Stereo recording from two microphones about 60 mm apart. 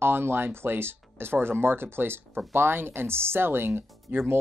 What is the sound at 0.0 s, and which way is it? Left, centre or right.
Speech, right.